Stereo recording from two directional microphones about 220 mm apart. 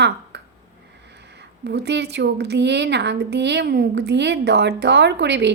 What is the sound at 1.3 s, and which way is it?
A woman's voice, 50° right (ahead or behind).